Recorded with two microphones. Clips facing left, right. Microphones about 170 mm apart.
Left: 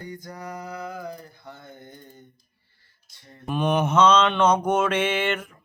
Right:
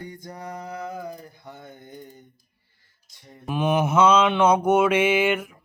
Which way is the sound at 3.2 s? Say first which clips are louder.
Right 2 dB; 15° right (ahead or behind).